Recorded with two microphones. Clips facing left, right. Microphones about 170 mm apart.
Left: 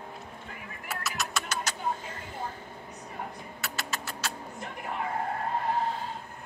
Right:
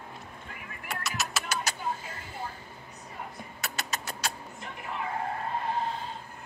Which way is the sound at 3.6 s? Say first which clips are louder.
Right 1 dB; 20° right (ahead or behind).